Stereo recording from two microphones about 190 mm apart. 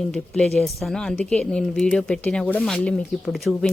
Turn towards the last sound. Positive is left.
turn(degrees=0)  # may be behind; listen again after turning